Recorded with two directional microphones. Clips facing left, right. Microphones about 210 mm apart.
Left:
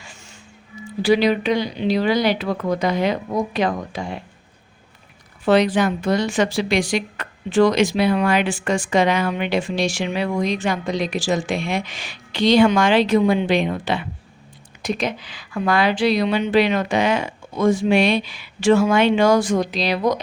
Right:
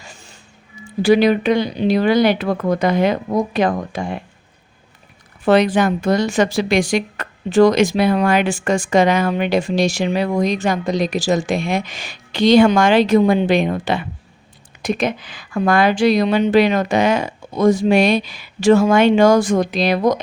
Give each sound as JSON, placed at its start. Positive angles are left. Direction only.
{"t": 0.0, "sound": "music", "side_deg": -40}
{"t": 1.0, "sound": "a woman's voice", "side_deg": -50}
{"t": 5.5, "sound": "a woman's voice", "side_deg": -50}